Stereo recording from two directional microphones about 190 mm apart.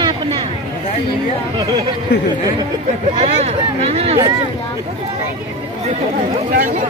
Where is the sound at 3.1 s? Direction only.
30° right (ahead or behind).